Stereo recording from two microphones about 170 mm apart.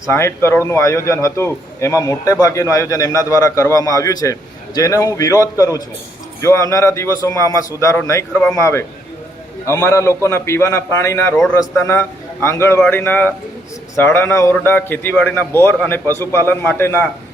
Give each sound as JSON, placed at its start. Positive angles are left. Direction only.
{"t": 0.1, "sound": "a man's voice", "side_deg": 15}